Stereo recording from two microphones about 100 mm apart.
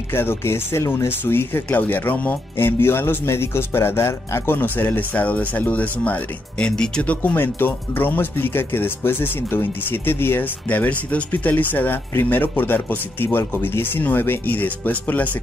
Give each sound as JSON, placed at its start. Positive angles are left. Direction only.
{"t": 0.1, "sound": "speech", "side_deg": 25}